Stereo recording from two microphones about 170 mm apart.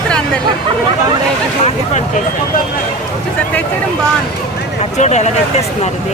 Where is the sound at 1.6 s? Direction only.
45° left (ahead or behind).